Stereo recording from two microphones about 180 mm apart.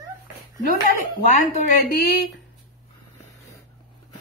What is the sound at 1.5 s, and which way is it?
Speech, 45° left (ahead or behind).